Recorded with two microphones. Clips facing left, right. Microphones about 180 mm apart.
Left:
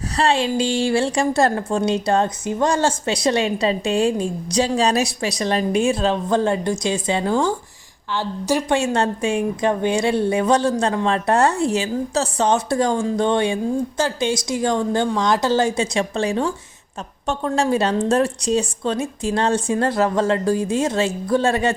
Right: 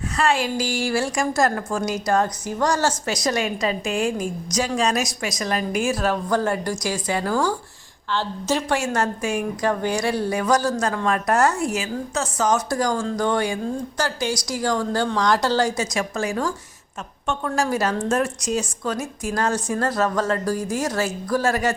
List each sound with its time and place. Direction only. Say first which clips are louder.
0.2 s a woman's voice: left 3 dB; 30° left (ahead or behind); by 8.8 s 15° left (ahead or behind)
8.8 s a woman's voice: left 3 dB; 25° left (ahead or behind)